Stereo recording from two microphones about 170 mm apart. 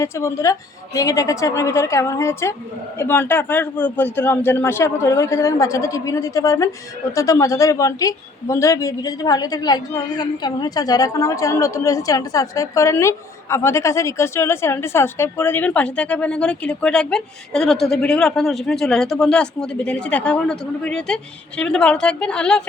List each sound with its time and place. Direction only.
0.0 s a man's voice: 15° left (ahead or behind)